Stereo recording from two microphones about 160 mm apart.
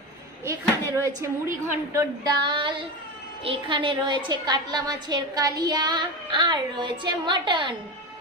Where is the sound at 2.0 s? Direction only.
30° right (ahead or behind).